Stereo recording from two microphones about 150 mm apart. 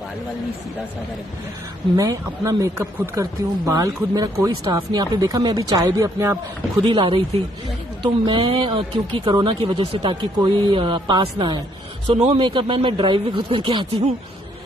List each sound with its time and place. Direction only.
2.0 s speech: 20° right (ahead or behind)
6.9 s speech: 35° right (ahead or behind)